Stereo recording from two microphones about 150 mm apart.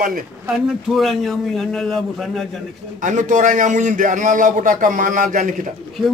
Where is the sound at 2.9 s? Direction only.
55° right (ahead or behind).